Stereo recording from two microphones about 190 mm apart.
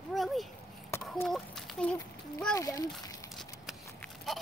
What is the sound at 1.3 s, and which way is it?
Speech, centre (ahead or behind).